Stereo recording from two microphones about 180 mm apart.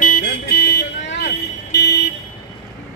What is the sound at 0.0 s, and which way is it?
Vehicle, 60° left (ahead or behind).